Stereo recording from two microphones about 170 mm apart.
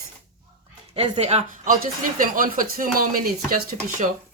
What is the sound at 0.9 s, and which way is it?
Speech, 40° right (ahead or behind).